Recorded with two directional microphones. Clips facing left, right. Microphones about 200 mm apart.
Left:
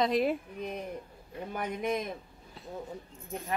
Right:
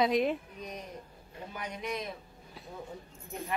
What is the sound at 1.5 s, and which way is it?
Speech, 55° left (ahead or behind).